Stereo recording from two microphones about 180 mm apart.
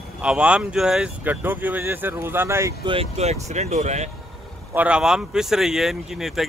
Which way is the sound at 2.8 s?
30° right (ahead or behind).